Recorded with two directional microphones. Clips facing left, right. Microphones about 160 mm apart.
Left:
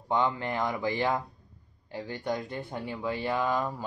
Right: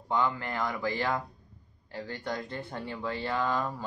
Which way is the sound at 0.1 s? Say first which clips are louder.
Left 2 dB; 20° left (ahead or behind).